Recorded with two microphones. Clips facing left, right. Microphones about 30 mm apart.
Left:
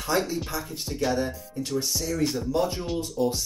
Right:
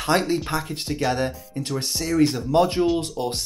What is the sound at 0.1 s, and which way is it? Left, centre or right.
Speech, right.